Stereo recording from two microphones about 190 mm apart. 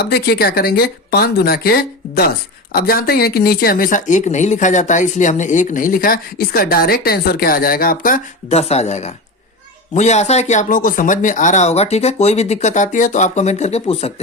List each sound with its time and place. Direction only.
0.0 s speech: 55° left (ahead or behind); by 14.1 s 30° left (ahead or behind)